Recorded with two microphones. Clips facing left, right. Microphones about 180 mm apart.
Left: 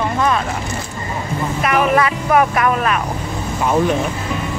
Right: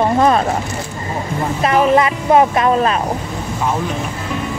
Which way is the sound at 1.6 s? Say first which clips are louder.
Right 3 dB; 30° right (ahead or behind).